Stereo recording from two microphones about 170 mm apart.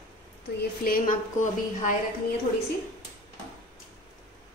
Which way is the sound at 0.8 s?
55° left (ahead or behind).